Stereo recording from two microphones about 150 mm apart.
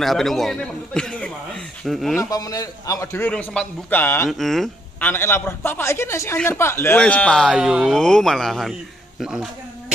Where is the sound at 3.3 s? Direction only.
10° left (ahead or behind).